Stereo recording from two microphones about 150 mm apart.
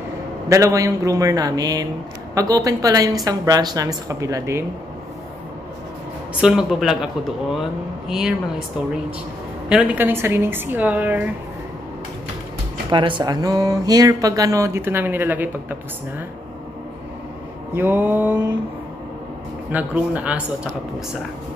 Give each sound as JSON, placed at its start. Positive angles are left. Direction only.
{"t": 0.5, "sound": "speech", "side_deg": -20}
{"t": 6.4, "sound": "a man's voice", "side_deg": -5}
{"t": 8.1, "sound": "a man's voice", "side_deg": -5}
{"t": 9.7, "sound": "a woman's voice", "side_deg": -10}
{"t": 12.9, "sound": "speech", "side_deg": -30}
{"t": 17.7, "sound": "a woman's voice", "side_deg": -15}
{"t": 19.7, "sound": "a woman's voice", "side_deg": -10}